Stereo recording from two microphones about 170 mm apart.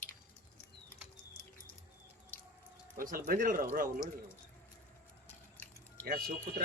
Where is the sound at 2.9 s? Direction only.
55° right (ahead or behind).